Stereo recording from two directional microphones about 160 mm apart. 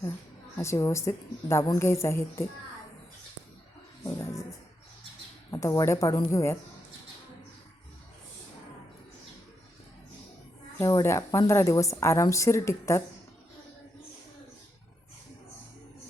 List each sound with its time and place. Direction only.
0.6 s a woman's voice: 15° left (ahead or behind)
4.0 s music: 20° left (ahead or behind)
5.5 s a woman's voice: 20° left (ahead or behind)
10.8 s a woman's voice: 20° left (ahead or behind)